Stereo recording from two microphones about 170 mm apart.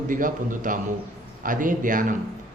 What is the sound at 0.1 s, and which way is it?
Speech, 50° right (ahead or behind).